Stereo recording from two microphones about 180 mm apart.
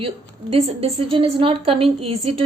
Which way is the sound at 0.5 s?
35° right (ahead or behind).